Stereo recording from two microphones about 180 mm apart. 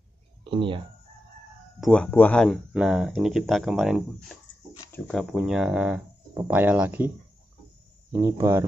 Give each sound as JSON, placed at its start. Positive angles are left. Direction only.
{"t": 0.4, "sound": "speech", "side_deg": -25}
{"t": 1.8, "sound": "speech", "side_deg": 5}
{"t": 4.7, "sound": "speech", "side_deg": 10}
{"t": 8.1, "sound": "speech", "side_deg": -15}